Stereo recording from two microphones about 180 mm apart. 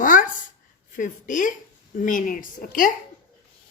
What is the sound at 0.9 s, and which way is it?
Speech, 45° left (ahead or behind).